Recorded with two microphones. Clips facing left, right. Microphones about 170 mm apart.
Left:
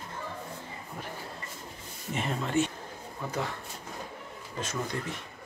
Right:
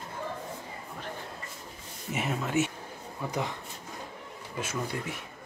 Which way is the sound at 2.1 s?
5° right (ahead or behind).